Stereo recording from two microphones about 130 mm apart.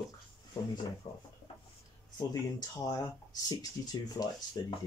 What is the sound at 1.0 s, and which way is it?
Speech, 30° left (ahead or behind).